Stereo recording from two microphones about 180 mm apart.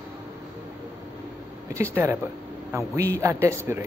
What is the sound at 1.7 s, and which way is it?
Speech, 15° right (ahead or behind).